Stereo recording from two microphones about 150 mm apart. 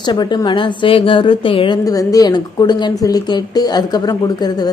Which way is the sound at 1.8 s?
25° left (ahead or behind).